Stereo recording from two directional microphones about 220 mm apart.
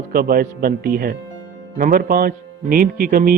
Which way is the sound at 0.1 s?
40° right (ahead or behind).